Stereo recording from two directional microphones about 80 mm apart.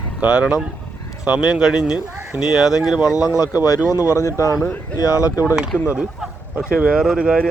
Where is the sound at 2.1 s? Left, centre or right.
Right.